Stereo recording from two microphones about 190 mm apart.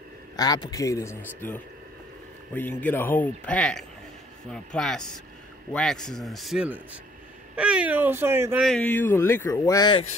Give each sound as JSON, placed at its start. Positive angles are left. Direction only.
{"t": 0.4, "sound": "a man's voice", "side_deg": 20}
{"t": 8.6, "sound": "speech", "side_deg": 5}